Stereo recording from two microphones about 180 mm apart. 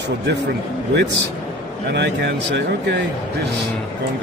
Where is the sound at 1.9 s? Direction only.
70° right (ahead or behind).